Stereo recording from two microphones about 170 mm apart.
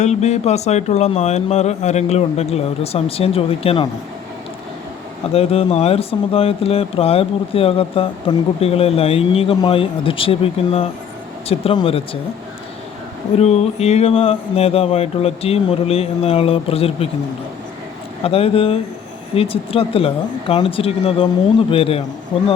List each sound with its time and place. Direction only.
0.0 s speech: 40° left (ahead or behind)
5.3 s speech: 35° left (ahead or behind)
13.3 s speech: 40° left (ahead or behind)
18.2 s speech: 35° left (ahead or behind)